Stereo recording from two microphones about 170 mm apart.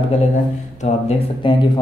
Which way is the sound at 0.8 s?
35° left (ahead or behind).